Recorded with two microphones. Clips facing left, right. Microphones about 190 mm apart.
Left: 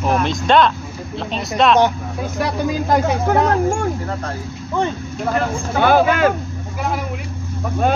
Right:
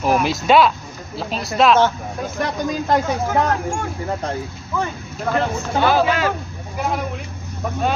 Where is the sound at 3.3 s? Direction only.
60° left (ahead or behind).